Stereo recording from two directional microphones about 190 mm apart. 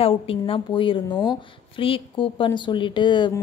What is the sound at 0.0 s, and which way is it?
A woman's voice, 30° left (ahead or behind).